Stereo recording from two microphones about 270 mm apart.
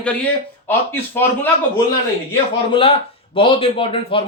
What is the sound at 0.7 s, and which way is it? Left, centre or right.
Speech, centre.